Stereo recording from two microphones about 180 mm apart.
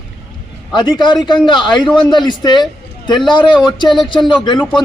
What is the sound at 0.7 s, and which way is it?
Speech, 25° left (ahead or behind).